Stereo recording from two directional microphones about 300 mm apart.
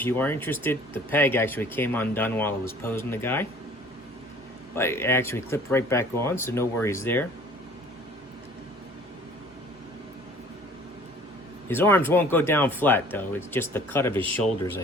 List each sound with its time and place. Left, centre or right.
0.0 s speech: centre
4.7 s speech: centre
11.7 s speech: centre